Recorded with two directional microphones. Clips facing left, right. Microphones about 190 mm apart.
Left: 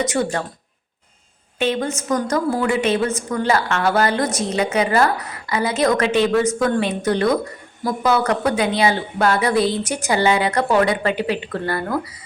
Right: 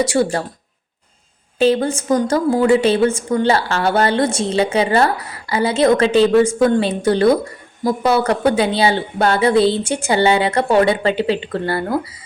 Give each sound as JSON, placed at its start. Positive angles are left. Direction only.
{"t": 0.0, "sound": "a woman's voice", "side_deg": -30}
{"t": 1.5, "sound": "a woman's voice", "side_deg": -35}